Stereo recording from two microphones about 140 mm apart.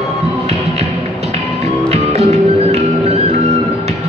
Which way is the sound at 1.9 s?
50° right (ahead or behind).